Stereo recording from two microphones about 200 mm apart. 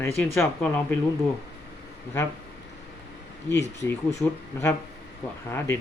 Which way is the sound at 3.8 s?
15° left (ahead or behind).